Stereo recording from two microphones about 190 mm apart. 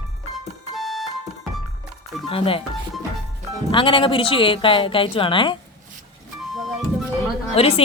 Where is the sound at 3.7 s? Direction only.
25° left (ahead or behind).